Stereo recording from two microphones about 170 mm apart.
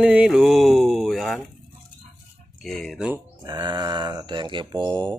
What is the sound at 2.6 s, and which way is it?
Speech, 5° left (ahead or behind).